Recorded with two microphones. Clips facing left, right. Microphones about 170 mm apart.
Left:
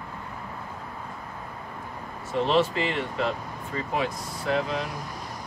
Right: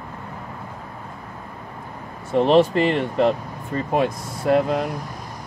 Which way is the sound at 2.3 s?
55° right (ahead or behind).